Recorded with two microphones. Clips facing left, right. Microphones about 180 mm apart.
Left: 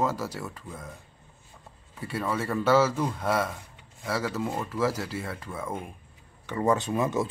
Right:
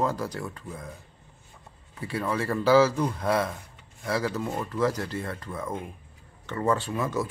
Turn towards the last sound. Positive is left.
turn(degrees=25)  # may be behind; listen again after turning